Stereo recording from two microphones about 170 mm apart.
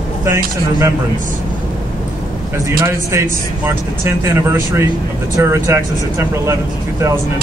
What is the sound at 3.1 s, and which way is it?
Speech, 15° right (ahead or behind).